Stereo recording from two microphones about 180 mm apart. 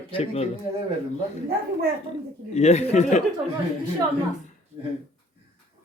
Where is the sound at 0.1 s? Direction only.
35° left (ahead or behind).